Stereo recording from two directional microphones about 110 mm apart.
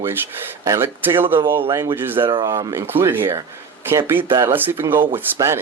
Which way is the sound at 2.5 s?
30° right (ahead or behind).